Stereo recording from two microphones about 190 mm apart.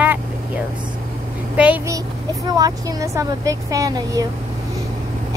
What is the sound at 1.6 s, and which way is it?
Speech, 10° right (ahead or behind).